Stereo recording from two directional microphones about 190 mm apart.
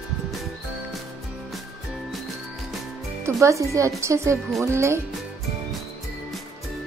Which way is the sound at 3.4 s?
15° right (ahead or behind).